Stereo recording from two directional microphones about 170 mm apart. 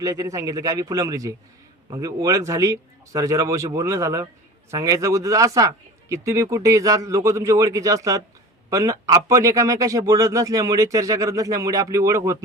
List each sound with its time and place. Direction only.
0.0 s speech: 20° right (ahead or behind)